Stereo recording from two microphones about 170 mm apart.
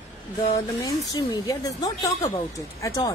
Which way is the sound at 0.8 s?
20° left (ahead or behind).